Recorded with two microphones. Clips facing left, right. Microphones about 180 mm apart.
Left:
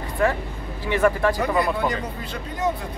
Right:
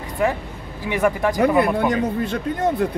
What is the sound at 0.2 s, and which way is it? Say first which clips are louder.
Speech: right 1 dB; 15° right (ahead or behind).